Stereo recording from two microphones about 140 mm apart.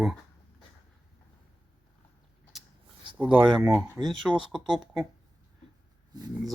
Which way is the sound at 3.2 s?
10° right (ahead or behind).